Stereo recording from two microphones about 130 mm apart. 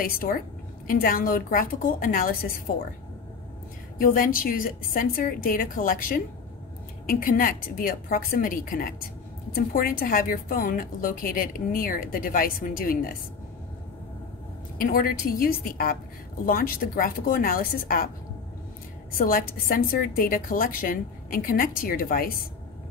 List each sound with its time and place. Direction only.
0.8 s a woman's voice: 90° left
4.0 s a woman's voice: 90° left
14.8 s a woman's voice: 90° left
19.1 s a woman's voice: 90° left